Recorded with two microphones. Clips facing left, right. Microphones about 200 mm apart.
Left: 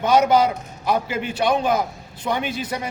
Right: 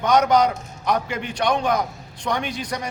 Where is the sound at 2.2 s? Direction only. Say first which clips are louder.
Left 1 dB; 5° left (ahead or behind).